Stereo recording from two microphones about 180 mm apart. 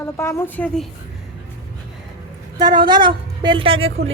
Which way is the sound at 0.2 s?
15° left (ahead or behind).